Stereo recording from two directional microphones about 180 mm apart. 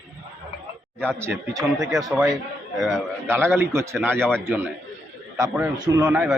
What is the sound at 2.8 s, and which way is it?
Speech, centre (ahead or behind).